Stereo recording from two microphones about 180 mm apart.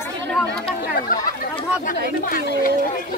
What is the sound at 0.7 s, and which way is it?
Speech, 55° left (ahead or behind).